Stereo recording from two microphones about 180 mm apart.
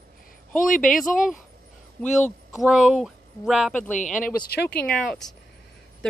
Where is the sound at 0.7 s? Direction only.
50° left (ahead or behind).